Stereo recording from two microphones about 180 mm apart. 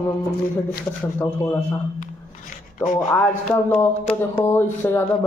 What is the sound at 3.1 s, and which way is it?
Speech, 10° left (ahead or behind).